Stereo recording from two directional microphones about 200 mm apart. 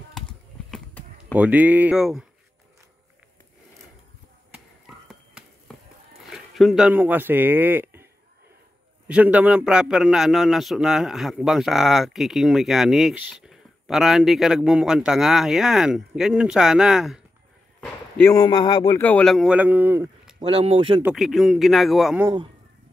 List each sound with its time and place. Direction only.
0.7 s basketball bounce: 5° left (ahead or behind)
1.3 s speech: 5° right (ahead or behind)
4.5 s a sound: 5° right (ahead or behind)
6.2 s a man's voice: centre (ahead or behind)
17.7 s speech: 10° left (ahead or behind)
18.9 s a man's voice: 10° left (ahead or behind); by 20.4 s 10° right (ahead or behind)
20.4 s speech: 25° right (ahead or behind)
21.0 s a man's voice: centre (ahead or behind)